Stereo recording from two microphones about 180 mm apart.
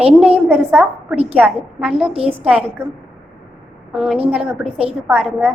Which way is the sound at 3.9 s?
Centre (ahead or behind).